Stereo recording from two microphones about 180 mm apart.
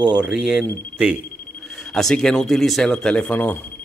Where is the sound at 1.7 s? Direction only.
Centre (ahead or behind).